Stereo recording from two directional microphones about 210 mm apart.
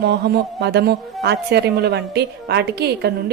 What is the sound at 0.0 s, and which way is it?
A woman's voice, 50° right (ahead or behind).